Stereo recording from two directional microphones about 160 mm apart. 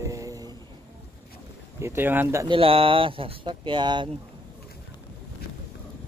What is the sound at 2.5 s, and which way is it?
Speech, 35° right (ahead or behind).